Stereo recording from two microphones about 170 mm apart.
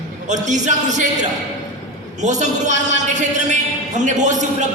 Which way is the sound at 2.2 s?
45° right (ahead or behind).